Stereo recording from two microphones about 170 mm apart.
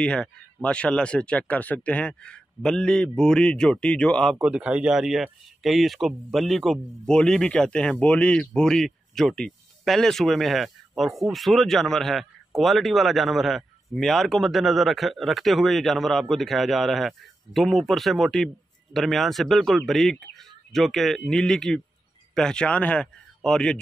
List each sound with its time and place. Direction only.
0.0 s a man's voice: 5° left (ahead or behind)